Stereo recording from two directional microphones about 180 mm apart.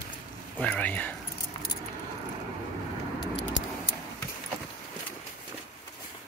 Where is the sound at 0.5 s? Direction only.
10° left (ahead or behind).